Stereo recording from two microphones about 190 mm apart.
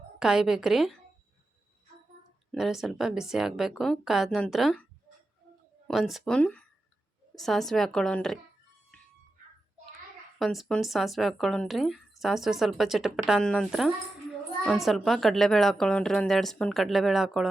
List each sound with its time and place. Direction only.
0.2 s speech: 5° right (ahead or behind)
2.5 s speech: centre (ahead or behind)
5.9 s speech: centre (ahead or behind)
10.3 s speech: centre (ahead or behind)